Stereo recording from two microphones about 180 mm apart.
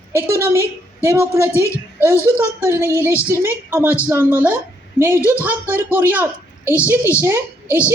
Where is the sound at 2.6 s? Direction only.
15° right (ahead or behind).